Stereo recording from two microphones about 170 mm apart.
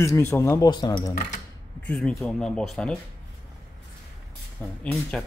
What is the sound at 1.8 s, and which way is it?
Speech, 5° left (ahead or behind).